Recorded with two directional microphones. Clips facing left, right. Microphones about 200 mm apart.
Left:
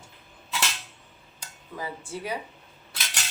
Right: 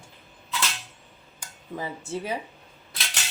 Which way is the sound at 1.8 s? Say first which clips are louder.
Right 3 dB; 25° right (ahead or behind).